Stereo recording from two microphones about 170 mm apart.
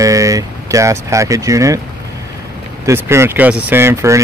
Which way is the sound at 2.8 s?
15° right (ahead or behind).